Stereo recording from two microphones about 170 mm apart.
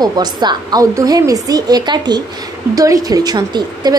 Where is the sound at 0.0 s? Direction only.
25° right (ahead or behind).